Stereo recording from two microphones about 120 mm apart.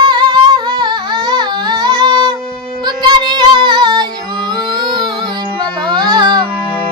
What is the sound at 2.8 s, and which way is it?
Child singing, 35° right (ahead or behind).